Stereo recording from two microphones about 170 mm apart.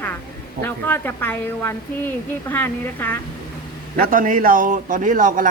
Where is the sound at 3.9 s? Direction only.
55° right (ahead or behind).